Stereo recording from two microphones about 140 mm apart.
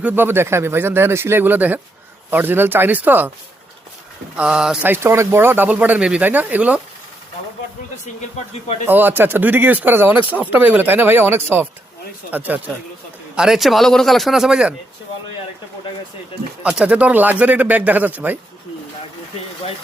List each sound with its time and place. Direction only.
0.0 s speech: 15° right (ahead or behind)
4.4 s speech: 5° right (ahead or behind)
4.9 s speech: 20° right (ahead or behind)
8.9 s a man's voice: 15° right (ahead or behind)
16.6 s speech: 5° right (ahead or behind)